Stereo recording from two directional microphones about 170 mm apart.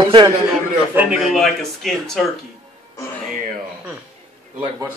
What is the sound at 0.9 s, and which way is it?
Speech, 5° right (ahead or behind).